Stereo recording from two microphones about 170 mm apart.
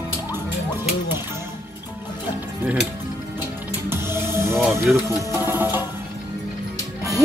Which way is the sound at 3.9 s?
15° right (ahead or behind).